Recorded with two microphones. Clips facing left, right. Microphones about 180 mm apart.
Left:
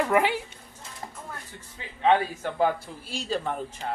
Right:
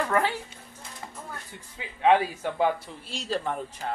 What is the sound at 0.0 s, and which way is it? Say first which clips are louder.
Speech: left 3 dB; 15° left (ahead or behind).